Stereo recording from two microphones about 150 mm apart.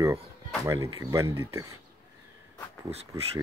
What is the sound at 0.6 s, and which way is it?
Speech, 20° right (ahead or behind).